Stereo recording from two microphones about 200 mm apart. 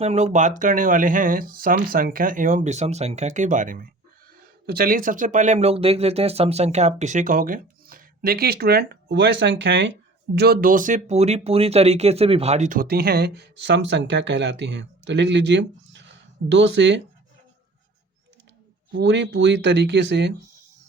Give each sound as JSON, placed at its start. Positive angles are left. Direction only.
{"t": 0.0, "sound": "speech", "side_deg": -35}
{"t": 18.9, "sound": "speech", "side_deg": -60}